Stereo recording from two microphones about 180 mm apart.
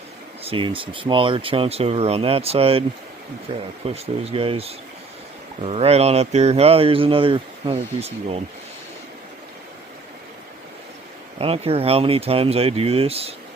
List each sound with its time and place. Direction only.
0.4 s speech: 30° right (ahead or behind)
11.3 s speech: 35° right (ahead or behind)